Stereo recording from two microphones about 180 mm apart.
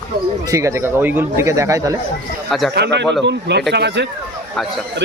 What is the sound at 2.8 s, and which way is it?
Speech, 75° right (ahead or behind).